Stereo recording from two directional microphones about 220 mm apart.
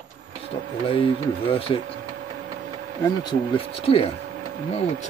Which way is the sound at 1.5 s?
25° left (ahead or behind).